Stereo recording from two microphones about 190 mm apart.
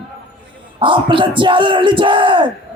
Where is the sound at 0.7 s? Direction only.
25° right (ahead or behind).